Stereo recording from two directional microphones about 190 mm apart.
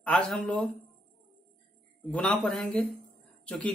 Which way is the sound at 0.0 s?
5° left (ahead or behind).